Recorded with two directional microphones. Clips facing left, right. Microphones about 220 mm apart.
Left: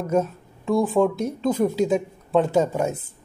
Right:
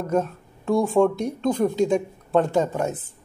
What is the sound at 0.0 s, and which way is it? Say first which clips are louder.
Speech: left 1 dB; 5° left (ahead or behind).